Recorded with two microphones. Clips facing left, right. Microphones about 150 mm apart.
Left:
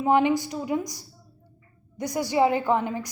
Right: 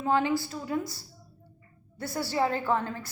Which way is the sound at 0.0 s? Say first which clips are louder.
Left 5 dB; 20° left (ahead or behind).